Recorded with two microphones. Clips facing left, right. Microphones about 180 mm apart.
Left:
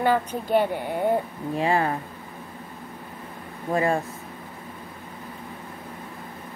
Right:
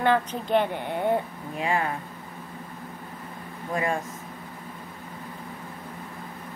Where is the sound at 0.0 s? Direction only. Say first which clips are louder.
Left 1 dB; 5° left (ahead or behind).